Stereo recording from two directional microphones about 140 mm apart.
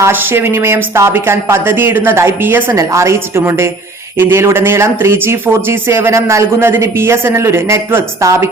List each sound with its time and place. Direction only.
0.0 s speech: 15° right (ahead or behind)